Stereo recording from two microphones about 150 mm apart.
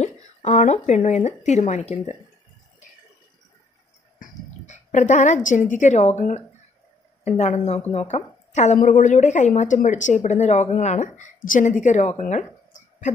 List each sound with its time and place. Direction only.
0.0 s speech: 50° left (ahead or behind)
4.2 s a woman's voice: 50° left (ahead or behind)